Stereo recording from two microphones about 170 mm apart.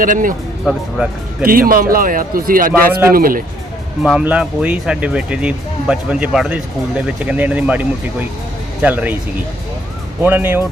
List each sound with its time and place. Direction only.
0.0 s speech: 50° right (ahead or behind)
0.6 s speech: centre (ahead or behind)
1.5 s a man's voice: 55° right (ahead or behind)
4.0 s speech: 5° right (ahead or behind)
10.2 s speech: 10° right (ahead or behind)